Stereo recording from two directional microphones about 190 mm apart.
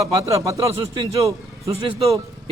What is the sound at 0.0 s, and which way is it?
Speech, 15° right (ahead or behind).